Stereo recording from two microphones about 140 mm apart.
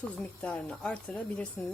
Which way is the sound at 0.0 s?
10° left (ahead or behind).